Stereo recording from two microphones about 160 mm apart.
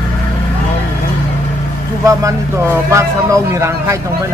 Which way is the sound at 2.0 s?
20° right (ahead or behind).